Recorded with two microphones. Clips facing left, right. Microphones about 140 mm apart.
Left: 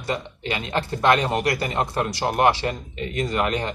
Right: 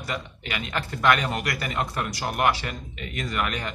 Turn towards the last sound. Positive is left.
turn(degrees=30)  # may be behind; listen again after turning